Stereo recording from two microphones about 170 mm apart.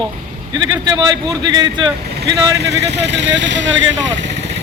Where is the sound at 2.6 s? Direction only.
90° right.